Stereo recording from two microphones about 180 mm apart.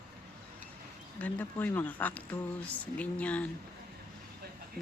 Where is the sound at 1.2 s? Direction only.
10° left (ahead or behind).